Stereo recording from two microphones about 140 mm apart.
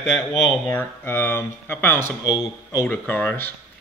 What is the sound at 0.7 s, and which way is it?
A man's voice, 15° left (ahead or behind).